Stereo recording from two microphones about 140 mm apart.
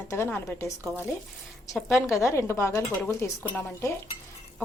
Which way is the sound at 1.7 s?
5° left (ahead or behind).